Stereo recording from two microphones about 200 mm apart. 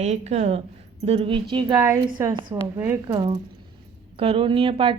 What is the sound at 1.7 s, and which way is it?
A woman's voice, 15° right (ahead or behind).